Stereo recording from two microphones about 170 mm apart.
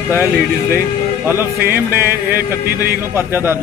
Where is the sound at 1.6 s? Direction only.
65° right (ahead or behind).